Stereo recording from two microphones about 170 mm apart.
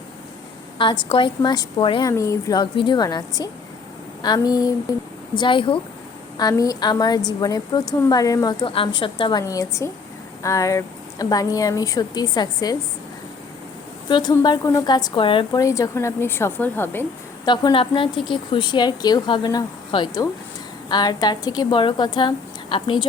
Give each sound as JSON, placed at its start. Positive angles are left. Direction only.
{"t": 1.0, "sound": "a woman's voice", "side_deg": 30}
{"t": 2.0, "sound": "a woman's voice", "side_deg": 20}
{"t": 8.6, "sound": "a woman's voice", "side_deg": 30}
{"t": 9.4, "sound": "a woman's voice", "side_deg": 20}
{"t": 14.1, "sound": "a woman's voice", "side_deg": 25}
{"t": 15.6, "sound": "speech", "side_deg": 20}
{"t": 17.4, "sound": "a woman's voice", "side_deg": 25}